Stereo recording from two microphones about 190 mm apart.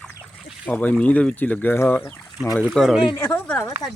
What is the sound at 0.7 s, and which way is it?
A man's voice, 5° left (ahead or behind).